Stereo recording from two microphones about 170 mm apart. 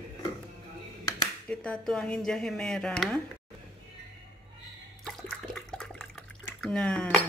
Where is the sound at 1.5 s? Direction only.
5° left (ahead or behind).